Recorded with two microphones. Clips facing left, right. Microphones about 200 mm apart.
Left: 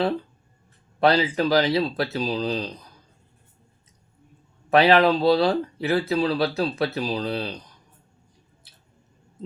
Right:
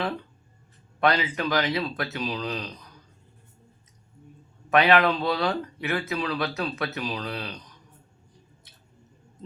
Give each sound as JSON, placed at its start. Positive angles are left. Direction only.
{"t": 0.9, "sound": "speech", "side_deg": 30}
{"t": 4.7, "sound": "speech", "side_deg": 30}
{"t": 8.7, "sound": "squish", "side_deg": 30}